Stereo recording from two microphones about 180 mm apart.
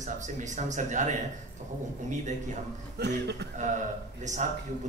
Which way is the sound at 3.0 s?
70° right (ahead or behind).